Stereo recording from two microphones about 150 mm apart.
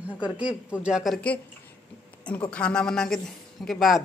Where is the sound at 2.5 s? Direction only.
5° left (ahead or behind).